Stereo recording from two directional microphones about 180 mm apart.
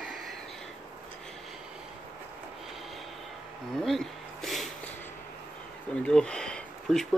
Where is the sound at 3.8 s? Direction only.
Centre (ahead or behind).